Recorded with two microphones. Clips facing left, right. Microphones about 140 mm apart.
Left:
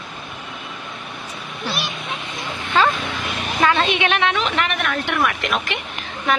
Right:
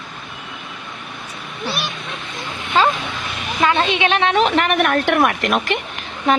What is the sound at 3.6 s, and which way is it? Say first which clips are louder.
A woman's voice: right 1 dB; 25° right (ahead or behind).